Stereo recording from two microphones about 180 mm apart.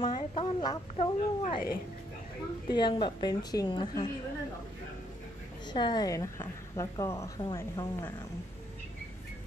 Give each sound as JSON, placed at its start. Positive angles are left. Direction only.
{"t": 0.0, "sound": "a sound", "side_deg": 30}
{"t": 2.7, "sound": "a woman's voice", "side_deg": 25}
{"t": 5.7, "sound": "a woman's voice", "side_deg": 25}